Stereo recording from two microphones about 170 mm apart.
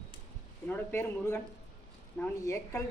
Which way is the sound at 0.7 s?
15° left (ahead or behind).